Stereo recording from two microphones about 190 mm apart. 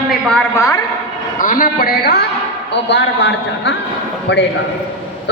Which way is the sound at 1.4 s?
45° left (ahead or behind).